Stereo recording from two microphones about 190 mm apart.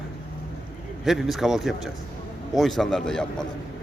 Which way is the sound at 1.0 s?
Centre (ahead or behind).